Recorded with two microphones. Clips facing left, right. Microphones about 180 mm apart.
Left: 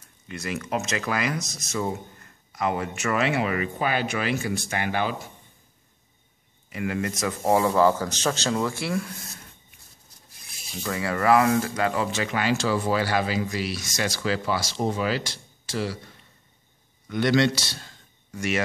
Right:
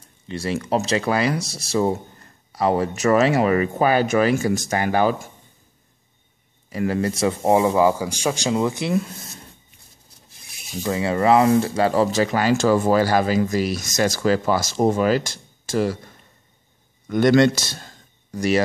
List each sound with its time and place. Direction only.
0.3 s speech: 30° right (ahead or behind)
6.7 s a man's voice: 35° right (ahead or behind)
10.8 s speech: 25° right (ahead or behind); by 16.0 s 45° right (ahead or behind)
17.1 s a man's voice: 45° right (ahead or behind)